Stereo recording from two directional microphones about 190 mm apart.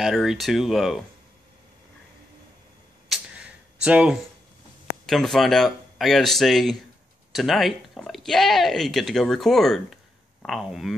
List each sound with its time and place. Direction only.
0.0 s speech: centre (ahead or behind)
3.1 s a sound: 5° right (ahead or behind)
5.0 s speech: centre (ahead or behind)